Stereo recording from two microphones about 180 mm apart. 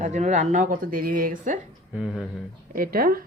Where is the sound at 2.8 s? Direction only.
55° right (ahead or behind).